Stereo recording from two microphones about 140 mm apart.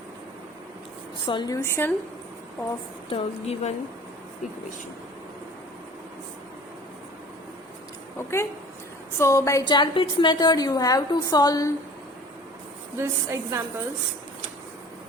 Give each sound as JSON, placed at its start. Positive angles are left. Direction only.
{"t": 1.3, "sound": "a woman's voice", "side_deg": 35}
{"t": 1.5, "sound": "speech", "side_deg": 20}
{"t": 3.1, "sound": "a woman's voice", "side_deg": 45}
{"t": 9.1, "sound": "a woman's voice", "side_deg": 20}
{"t": 13.0, "sound": "a woman's voice", "side_deg": -20}